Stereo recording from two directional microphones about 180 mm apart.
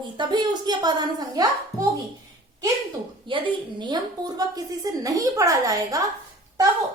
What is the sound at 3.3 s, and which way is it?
A woman's voice, 25° right (ahead or behind).